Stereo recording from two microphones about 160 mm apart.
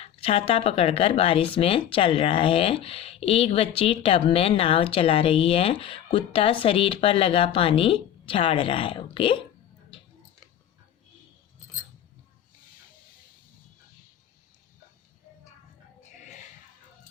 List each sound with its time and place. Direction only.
0.0 s speech: 35° left (ahead or behind)